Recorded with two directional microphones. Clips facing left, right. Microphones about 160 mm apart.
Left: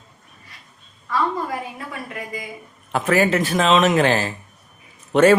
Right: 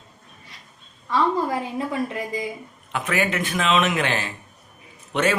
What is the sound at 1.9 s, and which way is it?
Speech, 25° right (ahead or behind).